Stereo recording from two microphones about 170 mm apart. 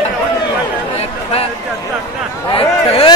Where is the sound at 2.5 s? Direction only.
35° left (ahead or behind).